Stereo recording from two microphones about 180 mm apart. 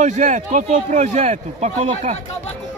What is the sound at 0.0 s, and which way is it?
Speech, 40° right (ahead or behind).